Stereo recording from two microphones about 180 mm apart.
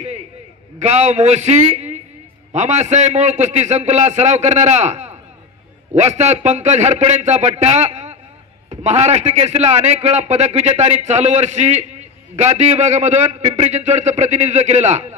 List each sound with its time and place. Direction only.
0.7 s a man's voice: 40° right (ahead or behind)